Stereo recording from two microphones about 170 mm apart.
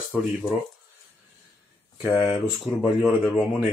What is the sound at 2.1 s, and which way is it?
Speech, 35° left (ahead or behind).